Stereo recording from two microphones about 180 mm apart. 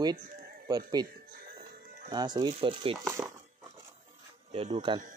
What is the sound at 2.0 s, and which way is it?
Speech, 20° right (ahead or behind).